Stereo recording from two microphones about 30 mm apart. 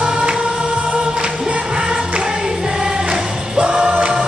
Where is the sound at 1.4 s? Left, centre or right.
Right.